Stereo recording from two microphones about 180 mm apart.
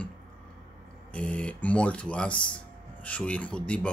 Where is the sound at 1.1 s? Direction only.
5° left (ahead or behind).